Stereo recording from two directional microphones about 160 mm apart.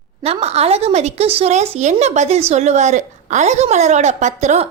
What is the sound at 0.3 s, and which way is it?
A woman's voice, 40° right (ahead or behind).